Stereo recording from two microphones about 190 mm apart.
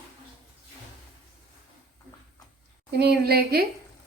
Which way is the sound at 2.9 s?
55° right (ahead or behind).